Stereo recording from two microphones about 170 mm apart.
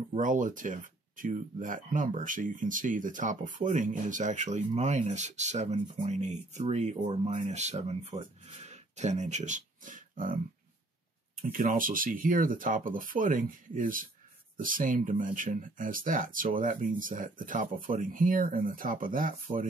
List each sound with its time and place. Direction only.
0.1 s speech: 50° right (ahead or behind)
11.5 s speech: 50° right (ahead or behind)